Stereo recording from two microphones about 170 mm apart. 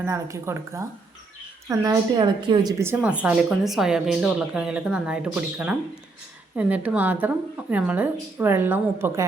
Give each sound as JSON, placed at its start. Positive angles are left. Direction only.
{"t": 0.0, "sound": "a woman's voice", "side_deg": -15}